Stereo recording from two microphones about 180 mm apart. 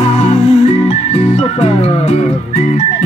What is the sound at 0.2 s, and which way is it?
Music, 40° left (ahead or behind).